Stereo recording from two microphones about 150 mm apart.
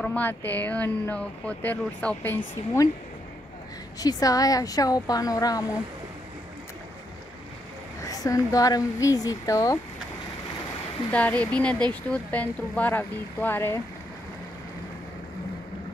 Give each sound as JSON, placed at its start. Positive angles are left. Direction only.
{"t": 0.0, "sound": "speech", "side_deg": 10}
{"t": 4.0, "sound": "speech", "side_deg": 25}
{"t": 8.0, "sound": "speech", "side_deg": 20}
{"t": 11.1, "sound": "speech", "side_deg": 10}